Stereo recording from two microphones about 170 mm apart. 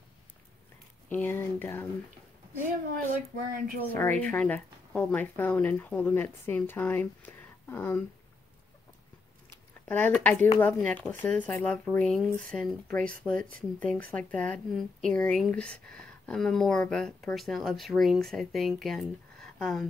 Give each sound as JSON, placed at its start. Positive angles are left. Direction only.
{"t": 1.0, "sound": "a woman's voice", "side_deg": 10}
{"t": 3.5, "sound": "a woman's voice", "side_deg": -55}
{"t": 3.9, "sound": "a woman's voice", "side_deg": 10}
{"t": 9.8, "sound": "a woman's voice", "side_deg": 10}